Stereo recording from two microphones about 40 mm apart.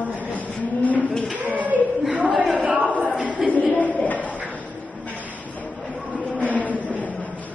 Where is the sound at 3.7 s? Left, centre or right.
Left.